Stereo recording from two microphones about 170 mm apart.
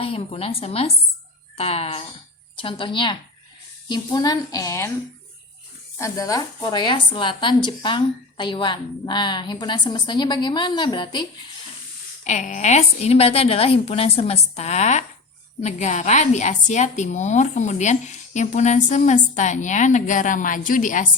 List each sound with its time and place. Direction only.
0.0 s a woman's voice: 35° left (ahead or behind); by 4.9 s 20° left (ahead or behind)
6.0 s a woman's voice: 20° left (ahead or behind)
12.2 s a woman's voice: 45° left (ahead or behind)